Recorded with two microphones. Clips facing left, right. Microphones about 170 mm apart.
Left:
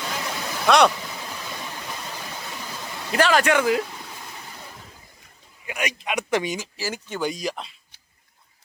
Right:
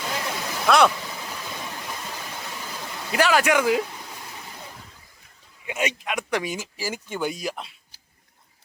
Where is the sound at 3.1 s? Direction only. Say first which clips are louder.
Left 1 dB; 10° right (ahead or behind).